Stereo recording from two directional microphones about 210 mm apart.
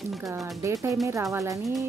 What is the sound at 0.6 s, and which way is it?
A woman's voice, 15° right (ahead or behind).